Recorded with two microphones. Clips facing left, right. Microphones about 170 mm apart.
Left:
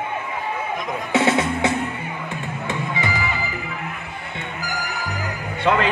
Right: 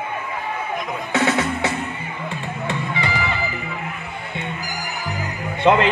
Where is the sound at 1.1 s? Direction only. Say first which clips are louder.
Left 1 dB; 25° left (ahead or behind).